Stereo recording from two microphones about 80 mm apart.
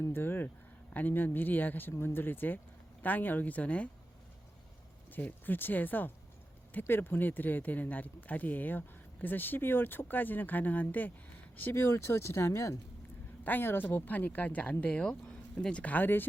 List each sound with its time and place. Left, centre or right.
0.0 s a sound: left
0.9 s speech: left
5.1 s speech: left
13.4 s speech: left